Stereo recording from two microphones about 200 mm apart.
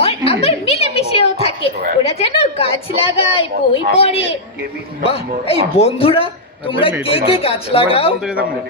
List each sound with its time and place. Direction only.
0.3 s a sound: 30° left (ahead or behind)
3.9 s a man's voice: 30° left (ahead or behind)
8.2 s speech: 5° right (ahead or behind)